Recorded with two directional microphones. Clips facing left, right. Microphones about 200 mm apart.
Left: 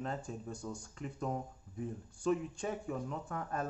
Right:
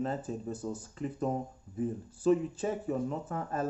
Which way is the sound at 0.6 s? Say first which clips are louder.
Right 7 dB; 30° right (ahead or behind).